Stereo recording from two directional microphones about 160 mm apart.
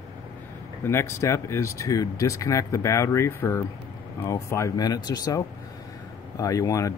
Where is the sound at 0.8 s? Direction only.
15° left (ahead or behind).